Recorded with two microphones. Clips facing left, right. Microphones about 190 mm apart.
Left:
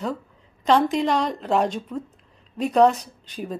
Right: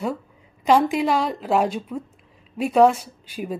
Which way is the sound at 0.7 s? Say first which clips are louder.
Right 1 dB; 10° right (ahead or behind).